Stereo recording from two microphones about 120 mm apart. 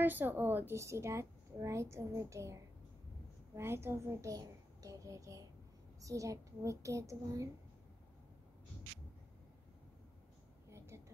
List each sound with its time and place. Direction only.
0.0 s a child's voice: 15° right (ahead or behind)